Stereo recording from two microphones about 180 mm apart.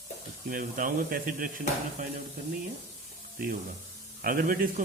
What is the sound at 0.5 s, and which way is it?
Speech, 50° right (ahead or behind).